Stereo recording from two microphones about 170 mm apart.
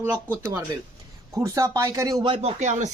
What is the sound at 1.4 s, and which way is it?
Speech, 15° right (ahead or behind).